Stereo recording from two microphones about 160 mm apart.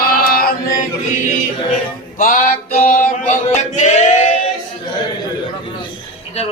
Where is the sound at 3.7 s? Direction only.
45° left (ahead or behind).